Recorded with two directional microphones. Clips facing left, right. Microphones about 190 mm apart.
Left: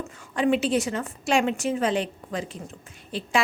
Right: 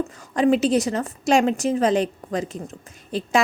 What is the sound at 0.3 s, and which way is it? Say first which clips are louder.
A woman's voice: right 4 dB; 40° right (ahead or behind).